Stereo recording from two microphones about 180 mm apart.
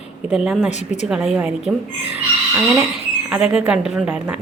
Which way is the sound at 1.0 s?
Centre (ahead or behind).